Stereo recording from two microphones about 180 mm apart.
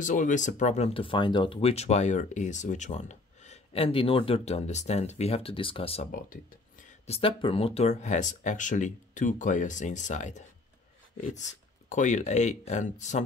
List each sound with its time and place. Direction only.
0.0 s speech: 45° left (ahead or behind)
6.1 s speech: 50° left (ahead or behind)
7.1 s speech: 30° left (ahead or behind)